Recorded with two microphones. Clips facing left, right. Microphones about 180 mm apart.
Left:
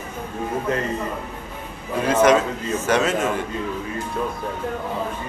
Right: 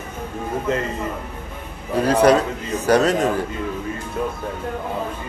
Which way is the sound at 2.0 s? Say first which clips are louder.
Right 2 dB; 35° right (ahead or behind).